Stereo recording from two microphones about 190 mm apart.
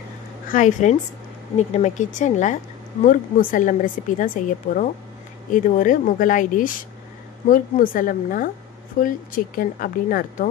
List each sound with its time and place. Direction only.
0.5 s a woman's voice: 40° left (ahead or behind)